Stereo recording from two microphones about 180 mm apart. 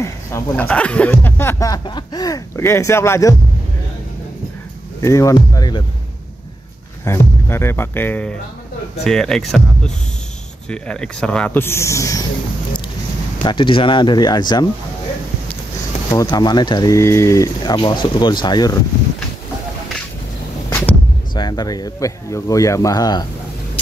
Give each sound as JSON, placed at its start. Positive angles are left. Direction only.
{"t": 0.0, "sound": "speech", "side_deg": 10}
{"t": 5.0, "sound": "speech", "side_deg": 15}
{"t": 7.1, "sound": "speech", "side_deg": 15}
{"t": 13.4, "sound": "speech", "side_deg": 25}
{"t": 16.1, "sound": "speech", "side_deg": 20}
{"t": 21.4, "sound": "speech", "side_deg": 25}